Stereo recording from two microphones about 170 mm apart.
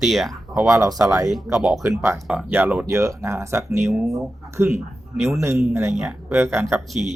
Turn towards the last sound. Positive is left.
turn(degrees=-5)  # may be behind; listen again after turning